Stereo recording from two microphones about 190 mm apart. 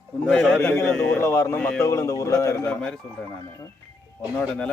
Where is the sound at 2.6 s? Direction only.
5° left (ahead or behind).